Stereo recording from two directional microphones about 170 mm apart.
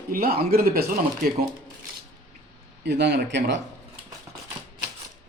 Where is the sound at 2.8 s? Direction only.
80° right.